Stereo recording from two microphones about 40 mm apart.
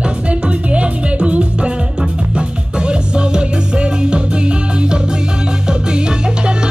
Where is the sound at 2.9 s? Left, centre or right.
Right.